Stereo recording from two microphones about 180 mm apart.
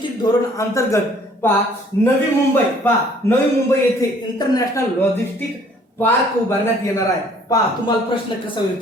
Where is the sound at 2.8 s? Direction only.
10° left (ahead or behind).